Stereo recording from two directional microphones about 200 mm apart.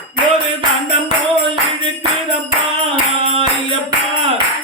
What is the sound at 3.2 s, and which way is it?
Music, 25° right (ahead or behind).